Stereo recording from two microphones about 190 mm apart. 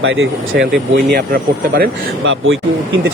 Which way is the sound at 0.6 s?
Centre (ahead or behind).